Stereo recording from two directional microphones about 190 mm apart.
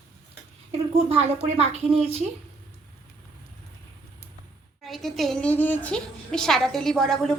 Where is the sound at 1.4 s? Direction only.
35° right (ahead or behind).